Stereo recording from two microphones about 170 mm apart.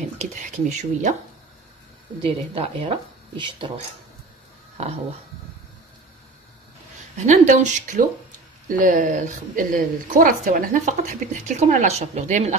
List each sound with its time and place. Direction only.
0.2 s speech: 45° right (ahead or behind)
2.2 s speech: 30° right (ahead or behind)
4.8 s speech: 40° right (ahead or behind)
7.2 s a woman's voice: 45° right (ahead or behind)